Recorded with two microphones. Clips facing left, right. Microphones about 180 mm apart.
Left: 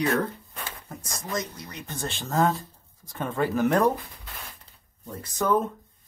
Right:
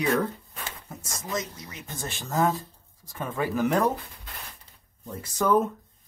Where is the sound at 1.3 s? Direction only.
5° right (ahead or behind).